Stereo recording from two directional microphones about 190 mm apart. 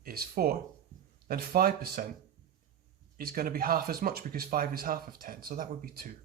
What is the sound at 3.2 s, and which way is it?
Speech, 50° right (ahead or behind).